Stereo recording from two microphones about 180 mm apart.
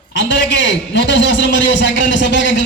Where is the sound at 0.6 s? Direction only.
80° left.